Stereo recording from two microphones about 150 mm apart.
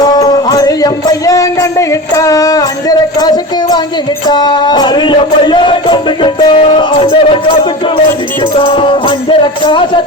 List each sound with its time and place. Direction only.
0.0 s music: 25° left (ahead or behind)
1.9 s a sound: 20° left (ahead or behind)
4.3 s music: 30° left (ahead or behind)
8.5 s music: 35° left (ahead or behind)